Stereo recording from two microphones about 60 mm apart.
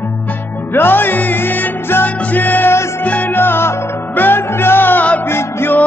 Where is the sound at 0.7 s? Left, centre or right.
Left.